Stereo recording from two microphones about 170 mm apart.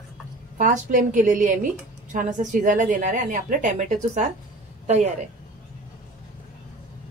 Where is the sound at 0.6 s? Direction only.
50° right (ahead or behind).